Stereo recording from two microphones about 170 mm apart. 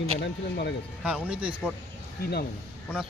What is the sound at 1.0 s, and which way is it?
Speech, 5° right (ahead or behind).